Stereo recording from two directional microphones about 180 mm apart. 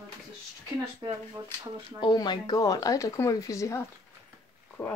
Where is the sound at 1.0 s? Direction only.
20° right (ahead or behind).